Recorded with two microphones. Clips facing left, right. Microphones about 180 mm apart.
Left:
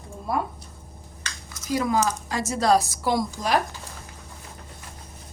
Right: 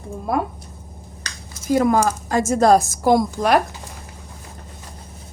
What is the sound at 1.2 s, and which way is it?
A woman's voice, 50° right (ahead or behind).